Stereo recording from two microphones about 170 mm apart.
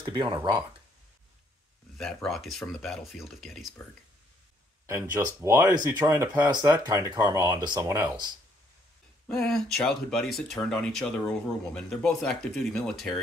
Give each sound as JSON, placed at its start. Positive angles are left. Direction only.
{"t": 0.0, "sound": "speech", "side_deg": -25}
{"t": 2.2, "sound": "speech", "side_deg": 0}
{"t": 5.4, "sound": "speech", "side_deg": -15}
{"t": 9.3, "sound": "speech", "side_deg": 5}